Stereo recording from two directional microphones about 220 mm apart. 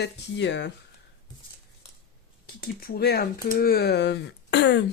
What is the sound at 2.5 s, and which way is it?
Speech, 45° left (ahead or behind).